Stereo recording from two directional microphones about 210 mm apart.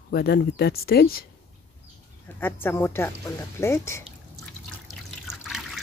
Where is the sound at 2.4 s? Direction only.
10° left (ahead or behind).